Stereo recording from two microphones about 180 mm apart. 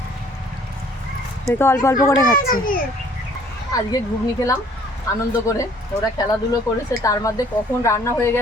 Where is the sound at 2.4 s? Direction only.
50° left (ahead or behind).